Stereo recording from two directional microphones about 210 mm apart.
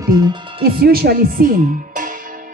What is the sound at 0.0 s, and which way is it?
Music, 20° right (ahead or behind).